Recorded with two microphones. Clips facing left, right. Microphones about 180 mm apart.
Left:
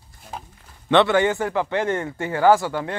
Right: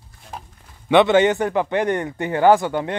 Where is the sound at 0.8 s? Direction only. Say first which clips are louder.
Right 3 dB; 15° right (ahead or behind).